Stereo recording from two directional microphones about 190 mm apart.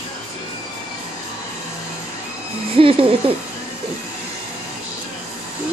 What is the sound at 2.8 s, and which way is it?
Speech, 30° right (ahead or behind).